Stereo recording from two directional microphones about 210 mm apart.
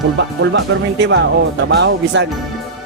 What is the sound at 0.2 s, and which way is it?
Speech, 55° right (ahead or behind).